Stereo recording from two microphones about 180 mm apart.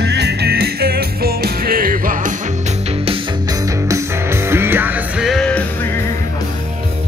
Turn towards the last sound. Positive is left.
turn(degrees=5)  # may be behind; listen again after turning